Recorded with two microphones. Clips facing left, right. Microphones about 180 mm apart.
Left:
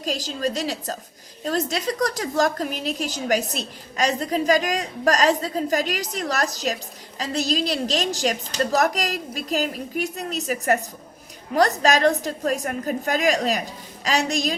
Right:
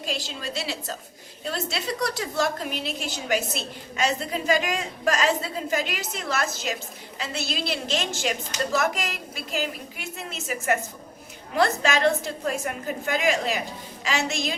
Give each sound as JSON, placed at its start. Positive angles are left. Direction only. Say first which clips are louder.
{"t": 0.0, "sound": "a woman's voice", "louder": "left 6 dB", "side_deg": 40}